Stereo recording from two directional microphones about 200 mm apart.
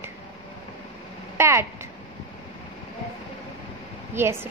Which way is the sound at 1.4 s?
15° right (ahead or behind).